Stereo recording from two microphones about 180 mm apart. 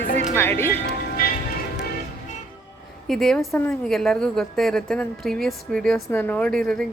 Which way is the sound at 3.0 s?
Centre (ahead or behind).